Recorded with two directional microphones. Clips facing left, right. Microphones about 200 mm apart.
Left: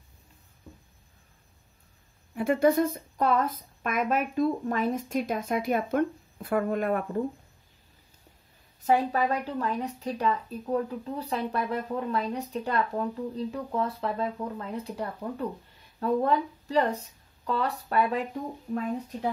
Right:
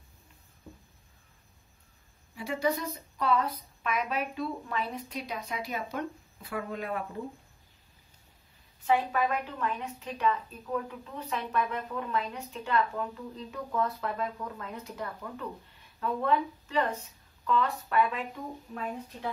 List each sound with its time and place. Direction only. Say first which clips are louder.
2.3 s a woman's voice: left 8 dB; 55° left (ahead or behind)
8.8 s a woman's voice: left 3 dB; 40° left (ahead or behind)